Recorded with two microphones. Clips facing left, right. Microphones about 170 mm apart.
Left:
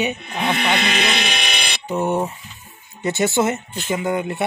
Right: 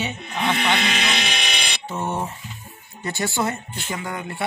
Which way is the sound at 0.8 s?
60° left (ahead or behind).